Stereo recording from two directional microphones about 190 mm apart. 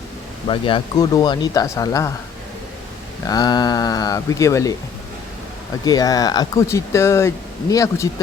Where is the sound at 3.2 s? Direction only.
20° left (ahead or behind).